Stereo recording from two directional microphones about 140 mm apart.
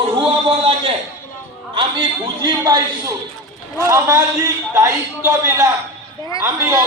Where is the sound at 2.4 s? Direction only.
30° right (ahead or behind).